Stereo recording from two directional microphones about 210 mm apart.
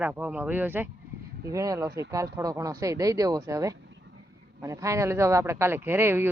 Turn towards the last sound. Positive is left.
turn(degrees=-10)  # may be behind; listen again after turning